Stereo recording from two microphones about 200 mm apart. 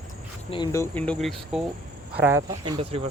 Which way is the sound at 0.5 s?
20° left (ahead or behind).